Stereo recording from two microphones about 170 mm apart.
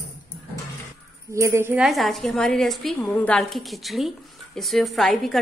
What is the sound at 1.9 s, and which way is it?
A woman's voice, centre (ahead or behind).